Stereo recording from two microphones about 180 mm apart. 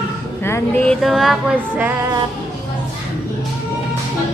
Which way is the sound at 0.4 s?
15° left (ahead or behind).